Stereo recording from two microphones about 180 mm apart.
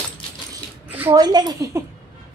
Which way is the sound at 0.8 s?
10° right (ahead or behind).